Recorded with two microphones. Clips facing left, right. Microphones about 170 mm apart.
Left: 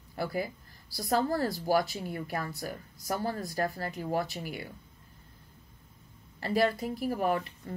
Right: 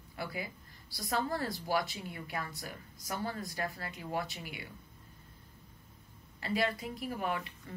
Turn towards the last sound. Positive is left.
turn(degrees=40)  # may be behind; listen again after turning